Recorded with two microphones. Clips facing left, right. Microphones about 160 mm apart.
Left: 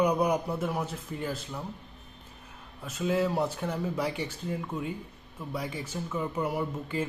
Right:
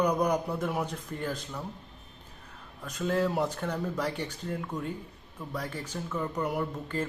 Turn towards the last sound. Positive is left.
turn(degrees=10)  # may be behind; listen again after turning